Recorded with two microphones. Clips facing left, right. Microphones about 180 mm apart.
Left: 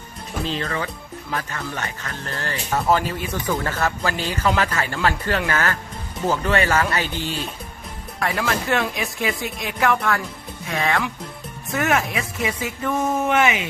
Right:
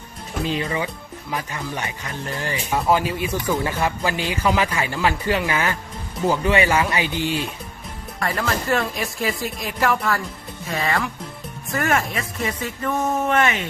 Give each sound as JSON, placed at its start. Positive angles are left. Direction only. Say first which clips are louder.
{"t": 0.4, "sound": "speech", "louder": "right 2 dB", "side_deg": -10}
{"t": 8.2, "sound": "speech", "louder": "left 1 dB", "side_deg": 0}